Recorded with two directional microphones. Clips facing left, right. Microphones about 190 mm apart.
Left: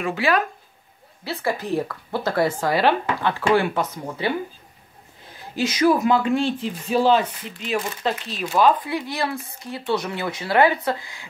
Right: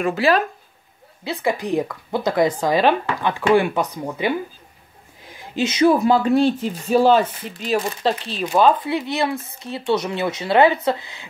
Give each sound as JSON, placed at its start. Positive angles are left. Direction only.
{"t": 0.0, "sound": "speech", "side_deg": -35}
{"t": 1.2, "sound": "speech", "side_deg": -20}
{"t": 5.3, "sound": "speech", "side_deg": -20}